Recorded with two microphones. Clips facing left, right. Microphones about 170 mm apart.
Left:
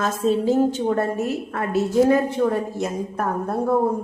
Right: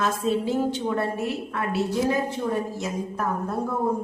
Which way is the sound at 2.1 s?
60° left (ahead or behind).